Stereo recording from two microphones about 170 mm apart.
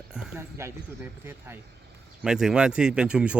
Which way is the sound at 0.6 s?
15° right (ahead or behind).